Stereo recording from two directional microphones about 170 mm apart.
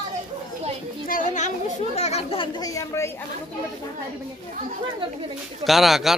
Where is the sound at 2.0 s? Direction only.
40° left (ahead or behind); by 3.1 s 20° left (ahead or behind).